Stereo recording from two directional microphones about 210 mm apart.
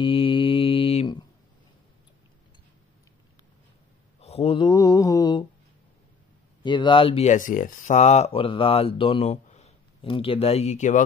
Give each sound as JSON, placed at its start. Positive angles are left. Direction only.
{"t": 0.0, "sound": "mantra", "side_deg": 25}
{"t": 4.2, "sound": "mantra", "side_deg": 30}
{"t": 6.6, "sound": "speech", "side_deg": 20}